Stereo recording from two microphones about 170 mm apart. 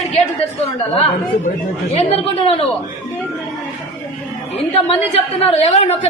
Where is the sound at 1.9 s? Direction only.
35° left (ahead or behind).